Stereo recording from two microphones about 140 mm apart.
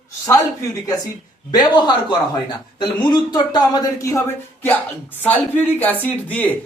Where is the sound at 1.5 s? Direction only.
30° left (ahead or behind).